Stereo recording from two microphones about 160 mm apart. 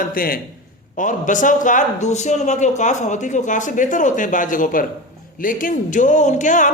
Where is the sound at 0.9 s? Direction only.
55° left (ahead or behind).